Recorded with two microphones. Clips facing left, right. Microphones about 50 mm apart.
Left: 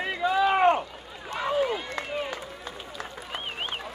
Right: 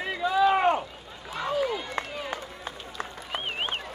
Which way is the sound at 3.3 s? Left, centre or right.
Right.